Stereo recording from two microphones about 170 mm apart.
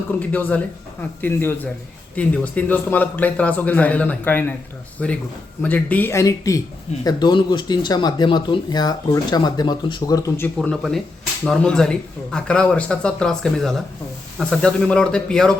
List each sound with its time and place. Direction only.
0.2 s a man's voice: 10° left (ahead or behind)
10.6 s speech: 5° left (ahead or behind)